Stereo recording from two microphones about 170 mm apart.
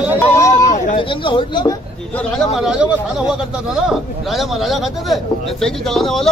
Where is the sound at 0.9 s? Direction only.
30° left (ahead or behind).